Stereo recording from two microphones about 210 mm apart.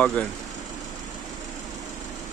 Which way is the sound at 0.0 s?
5° left (ahead or behind).